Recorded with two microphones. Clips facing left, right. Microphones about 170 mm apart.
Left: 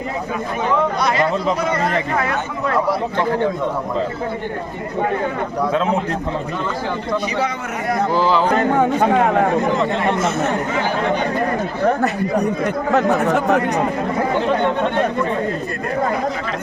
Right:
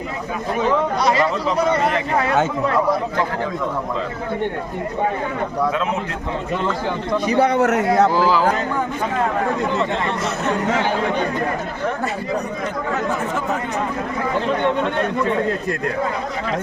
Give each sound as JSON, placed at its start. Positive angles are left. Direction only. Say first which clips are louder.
{"t": 7.3, "sound": "a man's voice", "louder": "right 7 dB", "side_deg": -55}
{"t": 8.1, "sound": "speech", "louder": "left 1 dB", "side_deg": -5}
{"t": 8.5, "sound": "speech", "louder": "left 7 dB", "side_deg": 65}
{"t": 12.9, "sound": "speech", "louder": "left 8 dB", "side_deg": 70}